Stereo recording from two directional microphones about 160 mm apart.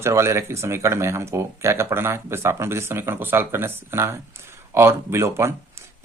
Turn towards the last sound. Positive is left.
turn(degrees=-15)  # may be behind; listen again after turning